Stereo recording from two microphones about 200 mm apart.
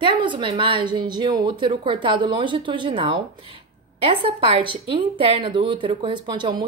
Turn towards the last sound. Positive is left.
turn(degrees=-20)  # may be behind; listen again after turning